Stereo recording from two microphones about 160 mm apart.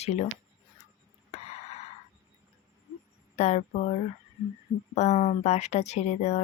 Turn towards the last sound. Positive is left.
turn(degrees=45)  # may be behind; listen again after turning